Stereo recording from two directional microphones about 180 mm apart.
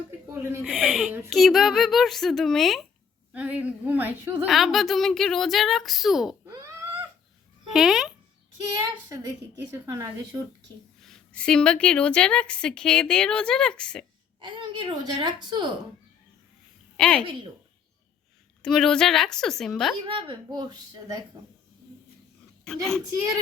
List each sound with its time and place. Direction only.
0.6 s a woman's voice: centre (ahead or behind)
6.4 s a sound: 15° right (ahead or behind)
7.7 s a child's voice: centre (ahead or behind)
9.0 s a woman's voice: 15° right (ahead or behind)
11.0 s a woman's voice: 5° left (ahead or behind)
14.4 s a woman's voice: 25° right (ahead or behind)
17.0 s a woman's voice: 5° left (ahead or behind)
18.6 s a woman's voice: 5° left (ahead or behind)
20.1 s a woman's voice: 25° right (ahead or behind)
22.6 s a child's voice: 5° left (ahead or behind)